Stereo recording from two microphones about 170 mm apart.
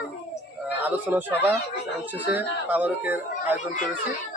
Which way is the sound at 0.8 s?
10° right (ahead or behind).